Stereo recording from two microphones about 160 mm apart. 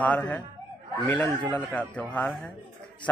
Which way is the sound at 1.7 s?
10° left (ahead or behind).